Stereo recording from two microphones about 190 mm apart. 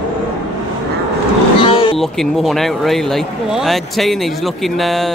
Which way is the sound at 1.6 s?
30° left (ahead or behind).